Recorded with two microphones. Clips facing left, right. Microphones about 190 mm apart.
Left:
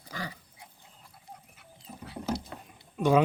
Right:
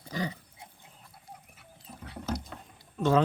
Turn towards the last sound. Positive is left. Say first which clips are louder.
# left 1 dB
turn(degrees=10)  # may be behind; listen again after turning